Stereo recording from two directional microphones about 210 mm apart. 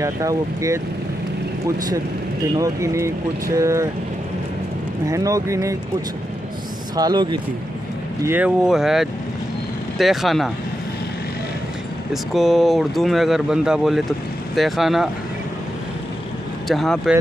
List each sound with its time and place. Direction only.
0.0 s speech: 15° right (ahead or behind)
2.5 s speech: 15° right (ahead or behind)
5.0 s speech: 15° right (ahead or behind)
7.0 s speech: 20° right (ahead or behind)
8.3 s speech: 5° right (ahead or behind)
12.1 s speech: centre (ahead or behind)
16.6 s speech: centre (ahead or behind)